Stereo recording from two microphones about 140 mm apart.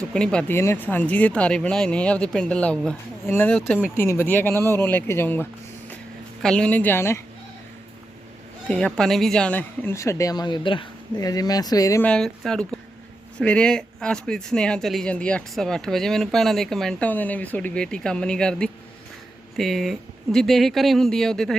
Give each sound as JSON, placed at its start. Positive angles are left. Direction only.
{"t": 0.1, "sound": "speech", "side_deg": 5}
{"t": 0.5, "sound": "speech", "side_deg": 20}
{"t": 8.6, "sound": "a woman's voice", "side_deg": 5}
{"t": 12.0, "sound": "speech", "side_deg": 5}